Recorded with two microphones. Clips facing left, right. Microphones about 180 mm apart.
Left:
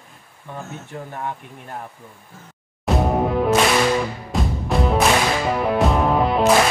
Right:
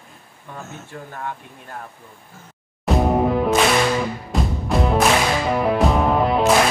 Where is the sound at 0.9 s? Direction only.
20° left (ahead or behind).